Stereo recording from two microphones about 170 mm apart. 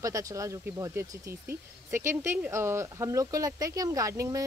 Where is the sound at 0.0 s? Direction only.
20° right (ahead or behind).